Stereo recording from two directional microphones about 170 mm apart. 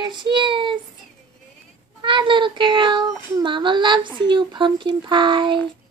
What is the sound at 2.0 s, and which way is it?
Speech, 30° right (ahead or behind).